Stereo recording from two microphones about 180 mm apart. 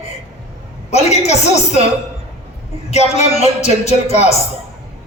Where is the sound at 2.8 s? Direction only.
35° left (ahead or behind).